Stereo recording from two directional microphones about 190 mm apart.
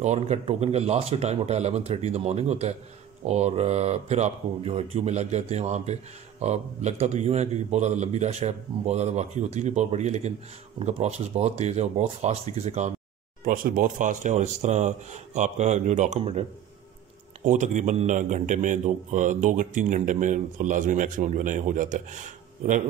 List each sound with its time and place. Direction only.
0.0 s a man's voice: 35° right (ahead or behind)
13.5 s a man's voice: 45° right (ahead or behind)
17.5 s a man's voice: 40° right (ahead or behind)